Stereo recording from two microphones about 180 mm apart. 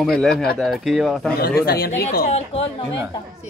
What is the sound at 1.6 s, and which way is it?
Speech, 55° left (ahead or behind).